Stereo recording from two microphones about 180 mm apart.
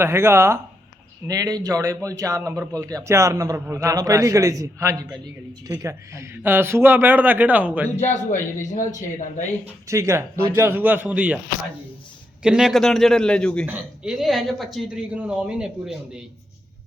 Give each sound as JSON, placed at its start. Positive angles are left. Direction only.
{"t": 0.0, "sound": "a man's voice", "side_deg": -15}
{"t": 7.9, "sound": "a man's voice", "side_deg": 40}
{"t": 9.8, "sound": "a man's voice", "side_deg": -15}
{"t": 12.4, "sound": "speech", "side_deg": -5}
{"t": 13.7, "sound": "speech", "side_deg": -10}